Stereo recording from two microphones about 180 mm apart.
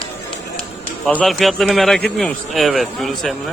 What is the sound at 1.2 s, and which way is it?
Speech, centre (ahead or behind).